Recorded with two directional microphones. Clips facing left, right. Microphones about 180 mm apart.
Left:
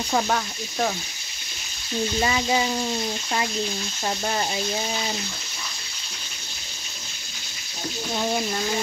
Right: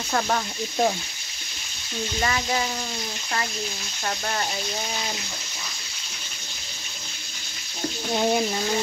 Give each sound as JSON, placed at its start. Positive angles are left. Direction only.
{"t": 2.1, "sound": "frying", "side_deg": 15}